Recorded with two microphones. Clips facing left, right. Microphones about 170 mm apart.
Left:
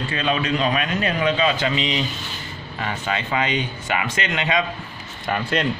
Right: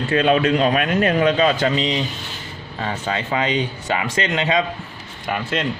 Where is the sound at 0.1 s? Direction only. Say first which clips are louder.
Right 7 dB; 55° right (ahead or behind); by 4.6 s 35° right (ahead or behind).